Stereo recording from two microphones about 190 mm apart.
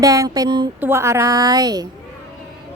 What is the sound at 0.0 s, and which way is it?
Speech, 15° right (ahead or behind).